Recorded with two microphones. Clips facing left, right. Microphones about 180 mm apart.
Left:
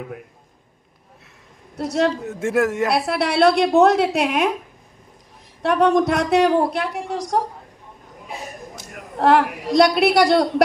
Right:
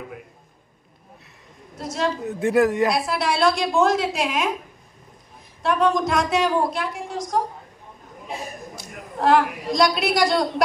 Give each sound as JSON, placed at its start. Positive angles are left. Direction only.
{"t": 1.8, "sound": "a woman's voice", "side_deg": 65}
{"t": 2.2, "sound": "a man's voice", "side_deg": 0}
{"t": 2.9, "sound": "a woman's voice", "side_deg": 65}
{"t": 5.6, "sound": "a woman's voice", "side_deg": 60}
{"t": 8.7, "sound": "a woman's voice", "side_deg": 60}